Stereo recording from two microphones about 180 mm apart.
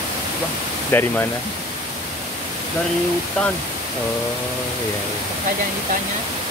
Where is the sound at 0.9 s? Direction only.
10° left (ahead or behind).